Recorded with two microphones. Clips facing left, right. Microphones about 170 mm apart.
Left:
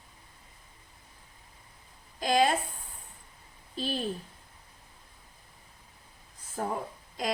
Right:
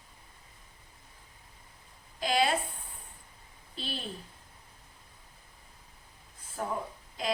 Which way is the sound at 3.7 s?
45° left (ahead or behind).